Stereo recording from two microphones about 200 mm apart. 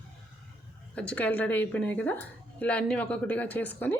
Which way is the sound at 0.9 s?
5° left (ahead or behind).